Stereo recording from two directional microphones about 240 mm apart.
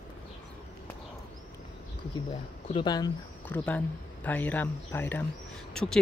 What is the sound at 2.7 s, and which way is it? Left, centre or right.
Speech, centre.